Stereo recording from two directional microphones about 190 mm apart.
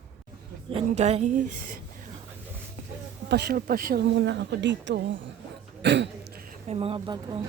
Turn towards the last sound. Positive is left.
turn(degrees=-30)  # may be behind; listen again after turning